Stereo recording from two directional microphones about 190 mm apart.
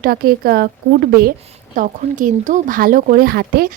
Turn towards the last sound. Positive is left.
turn(degrees=-50)  # may be behind; listen again after turning